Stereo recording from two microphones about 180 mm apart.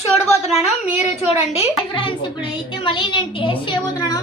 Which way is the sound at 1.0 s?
35° left (ahead or behind).